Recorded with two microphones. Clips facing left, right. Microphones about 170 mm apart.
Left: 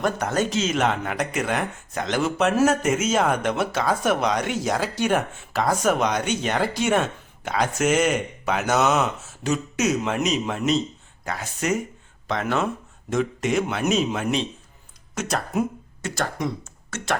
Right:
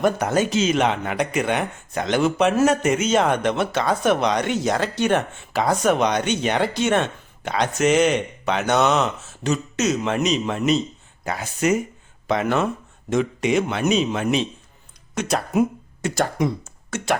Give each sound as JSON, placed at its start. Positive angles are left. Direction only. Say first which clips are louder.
{"t": 0.0, "sound": "speech", "louder": "right 4 dB", "side_deg": -5}